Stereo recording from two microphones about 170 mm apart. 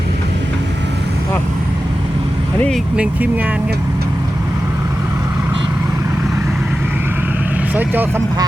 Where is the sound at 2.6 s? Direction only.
Centre (ahead or behind).